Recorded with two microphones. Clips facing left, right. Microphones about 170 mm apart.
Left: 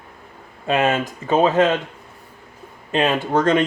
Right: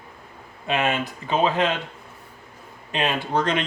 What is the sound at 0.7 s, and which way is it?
Speech, 40° left (ahead or behind).